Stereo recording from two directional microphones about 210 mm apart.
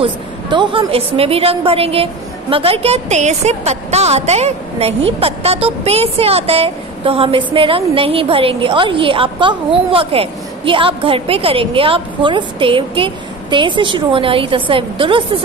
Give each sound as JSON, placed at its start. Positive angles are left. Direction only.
{"t": 0.0, "sound": "a woman's voice", "side_deg": -25}